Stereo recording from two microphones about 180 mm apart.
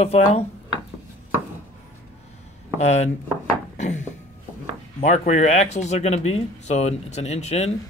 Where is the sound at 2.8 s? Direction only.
40° left (ahead or behind).